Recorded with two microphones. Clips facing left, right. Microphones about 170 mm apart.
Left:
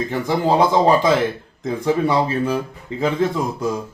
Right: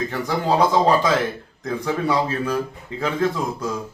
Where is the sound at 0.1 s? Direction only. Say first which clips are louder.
Left 6 dB; 20° left (ahead or behind).